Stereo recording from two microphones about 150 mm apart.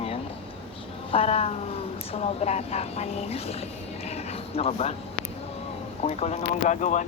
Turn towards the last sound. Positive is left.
turn(degrees=55)  # may be behind; listen again after turning